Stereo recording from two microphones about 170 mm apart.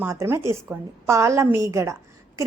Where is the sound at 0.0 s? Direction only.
15° right (ahead or behind).